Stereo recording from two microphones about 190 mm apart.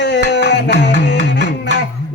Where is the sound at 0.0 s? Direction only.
65° left (ahead or behind).